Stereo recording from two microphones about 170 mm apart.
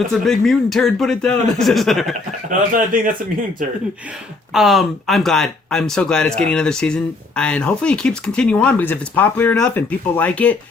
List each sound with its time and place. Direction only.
0.1 s speech: centre (ahead or behind)
2.5 s speech: 55° right (ahead or behind)
4.5 s speech: centre (ahead or behind)